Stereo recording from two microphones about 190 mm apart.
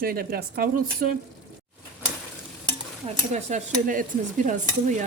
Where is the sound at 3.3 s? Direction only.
40° right (ahead or behind).